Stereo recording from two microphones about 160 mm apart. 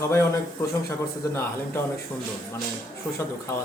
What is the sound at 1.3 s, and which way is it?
Speech, 15° left (ahead or behind).